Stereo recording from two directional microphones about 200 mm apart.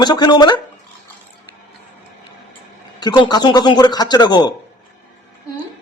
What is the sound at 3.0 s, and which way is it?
A man's voice, 20° left (ahead or behind).